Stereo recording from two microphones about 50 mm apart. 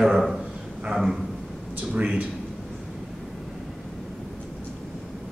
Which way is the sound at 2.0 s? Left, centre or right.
Right.